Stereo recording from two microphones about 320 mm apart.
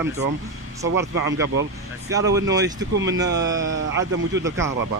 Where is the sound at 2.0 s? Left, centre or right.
Centre.